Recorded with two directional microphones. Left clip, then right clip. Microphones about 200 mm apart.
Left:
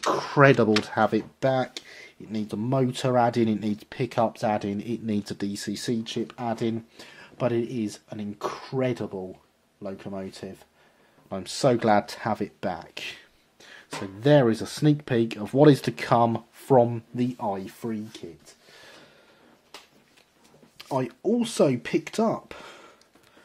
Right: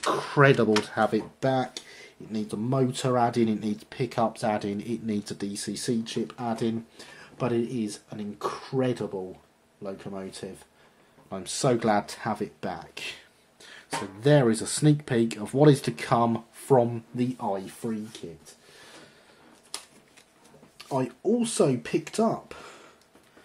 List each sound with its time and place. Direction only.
0.0 s speech: 35° left (ahead or behind)
20.7 s speech: 50° left (ahead or behind)